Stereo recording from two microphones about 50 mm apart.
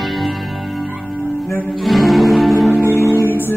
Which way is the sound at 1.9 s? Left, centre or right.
Centre.